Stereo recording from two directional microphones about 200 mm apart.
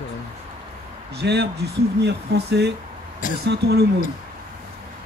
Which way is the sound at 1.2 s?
55° right (ahead or behind).